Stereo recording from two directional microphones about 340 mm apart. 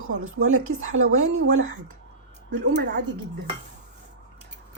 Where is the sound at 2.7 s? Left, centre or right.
Right.